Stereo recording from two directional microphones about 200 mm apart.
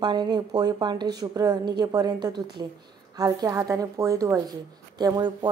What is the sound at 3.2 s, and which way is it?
A woman's voice, 20° right (ahead or behind).